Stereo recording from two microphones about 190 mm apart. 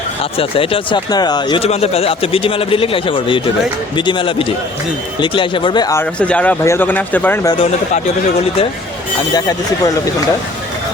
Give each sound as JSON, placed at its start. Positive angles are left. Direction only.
{"t": 0.2, "sound": "speech", "side_deg": 30}
{"t": 7.6, "sound": "speech", "side_deg": 30}
{"t": 9.3, "sound": "speech", "side_deg": 20}